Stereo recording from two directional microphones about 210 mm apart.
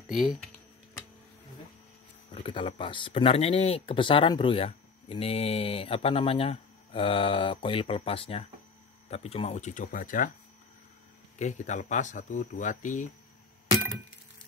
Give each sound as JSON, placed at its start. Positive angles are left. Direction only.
{"t": 0.1, "sound": "speech", "side_deg": 0}
{"t": 2.3, "sound": "speech", "side_deg": 25}
{"t": 11.3, "sound": "speech", "side_deg": 35}